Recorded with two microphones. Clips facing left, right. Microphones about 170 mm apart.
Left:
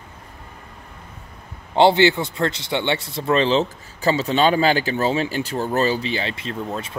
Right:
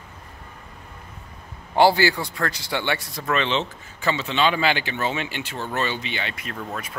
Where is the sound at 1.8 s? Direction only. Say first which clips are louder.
Left 3 dB; 25° left (ahead or behind).